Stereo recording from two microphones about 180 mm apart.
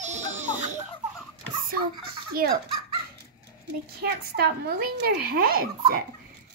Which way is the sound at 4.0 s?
60° right (ahead or behind).